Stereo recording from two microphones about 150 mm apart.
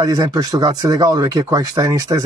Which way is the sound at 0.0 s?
25° right (ahead or behind).